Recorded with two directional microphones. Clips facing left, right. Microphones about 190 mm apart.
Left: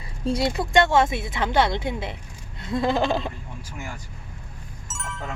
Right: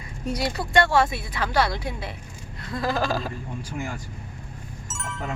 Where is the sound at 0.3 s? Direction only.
25° left (ahead or behind).